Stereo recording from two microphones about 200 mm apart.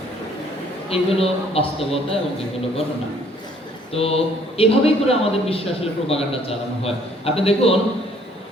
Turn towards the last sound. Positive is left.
turn(degrees=30)  # may be behind; listen again after turning